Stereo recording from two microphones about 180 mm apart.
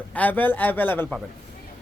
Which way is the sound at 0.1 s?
10° left (ahead or behind).